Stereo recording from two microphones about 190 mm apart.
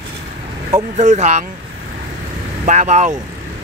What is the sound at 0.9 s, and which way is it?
Speech, 35° right (ahead or behind).